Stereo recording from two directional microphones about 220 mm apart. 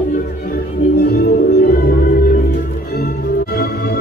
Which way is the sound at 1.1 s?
45° left (ahead or behind).